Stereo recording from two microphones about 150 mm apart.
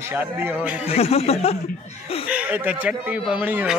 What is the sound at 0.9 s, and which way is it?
Speech, 40° left (ahead or behind).